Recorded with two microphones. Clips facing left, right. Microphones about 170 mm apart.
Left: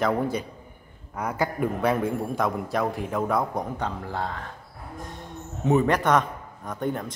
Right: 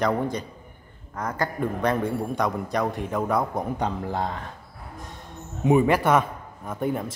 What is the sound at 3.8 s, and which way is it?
Speech, 20° right (ahead or behind).